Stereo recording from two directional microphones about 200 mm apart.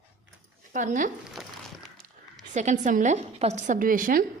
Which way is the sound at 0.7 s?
40° right (ahead or behind).